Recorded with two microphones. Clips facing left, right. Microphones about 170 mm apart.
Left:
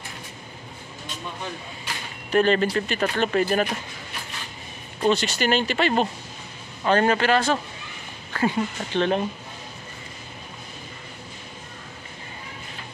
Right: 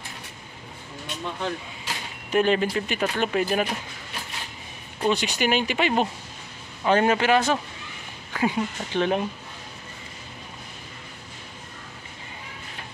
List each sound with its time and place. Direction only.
2.3 s speech: 10° right (ahead or behind)
5.1 s speech: 15° right (ahead or behind)
8.3 s speech: 5° right (ahead or behind)